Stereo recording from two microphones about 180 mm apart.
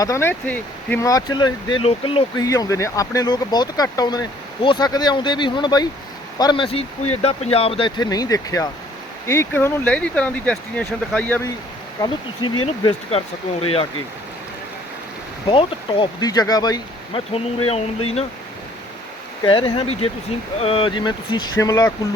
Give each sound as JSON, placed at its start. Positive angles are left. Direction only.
{"t": 0.0, "sound": "speech", "side_deg": 15}
{"t": 2.4, "sound": "speech", "side_deg": 20}
{"t": 11.9, "sound": "speech", "side_deg": 25}
{"t": 15.4, "sound": "speech", "side_deg": 30}
{"t": 17.3, "sound": "speech", "side_deg": 35}
{"t": 19.5, "sound": "speech", "side_deg": 25}